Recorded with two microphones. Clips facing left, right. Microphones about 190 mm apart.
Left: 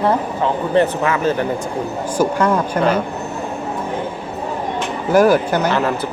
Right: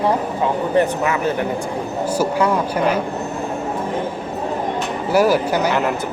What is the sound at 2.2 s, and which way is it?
Speech, 10° right (ahead or behind).